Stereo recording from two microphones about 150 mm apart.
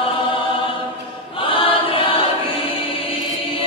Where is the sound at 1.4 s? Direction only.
35° left (ahead or behind).